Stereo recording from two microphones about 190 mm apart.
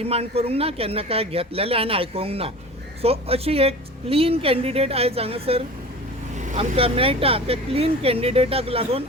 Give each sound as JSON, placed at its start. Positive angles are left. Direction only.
{"t": 0.0, "sound": "speech", "side_deg": -30}